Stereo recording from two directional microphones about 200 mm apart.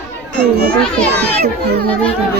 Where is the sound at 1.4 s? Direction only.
50° right (ahead or behind).